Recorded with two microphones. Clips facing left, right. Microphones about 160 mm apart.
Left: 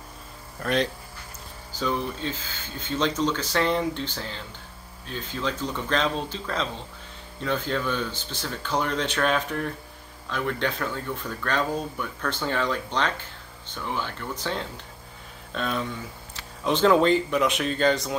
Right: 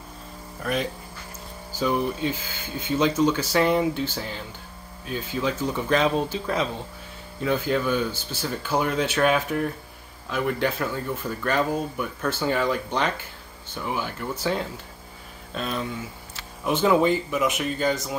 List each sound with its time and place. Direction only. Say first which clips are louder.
0.6 s speech: left 2 dB; 5° right (ahead or behind)